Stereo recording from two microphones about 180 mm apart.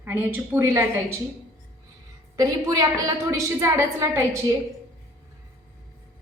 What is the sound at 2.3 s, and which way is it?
A woman's voice, 20° right (ahead or behind).